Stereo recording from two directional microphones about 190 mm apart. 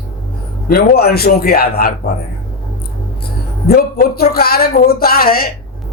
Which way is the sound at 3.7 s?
55° left (ahead or behind).